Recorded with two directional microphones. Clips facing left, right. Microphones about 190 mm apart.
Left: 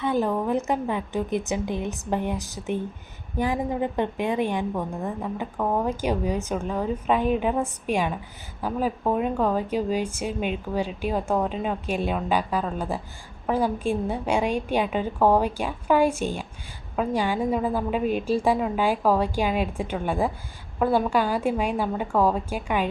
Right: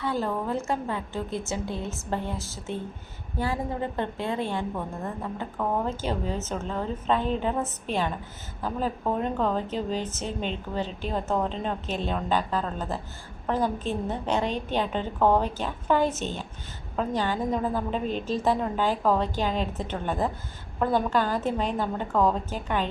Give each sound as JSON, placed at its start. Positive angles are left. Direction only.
{"t": 0.0, "sound": "a woman's voice", "side_deg": 20}